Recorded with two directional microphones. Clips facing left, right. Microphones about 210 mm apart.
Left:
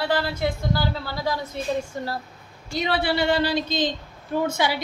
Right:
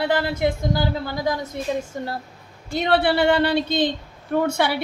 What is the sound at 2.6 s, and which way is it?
A woman's voice, 55° right (ahead or behind).